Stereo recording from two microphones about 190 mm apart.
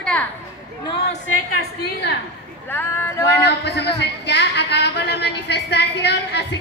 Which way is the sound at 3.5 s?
60° left (ahead or behind).